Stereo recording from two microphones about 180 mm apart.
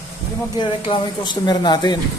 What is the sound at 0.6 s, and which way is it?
Speech, 25° left (ahead or behind).